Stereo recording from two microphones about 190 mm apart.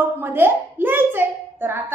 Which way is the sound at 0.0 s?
10° right (ahead or behind).